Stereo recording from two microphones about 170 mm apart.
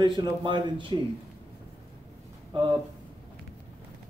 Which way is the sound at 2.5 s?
30° right (ahead or behind).